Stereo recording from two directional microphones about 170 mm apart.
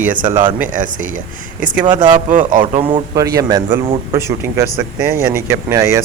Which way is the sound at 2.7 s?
30° right (ahead or behind).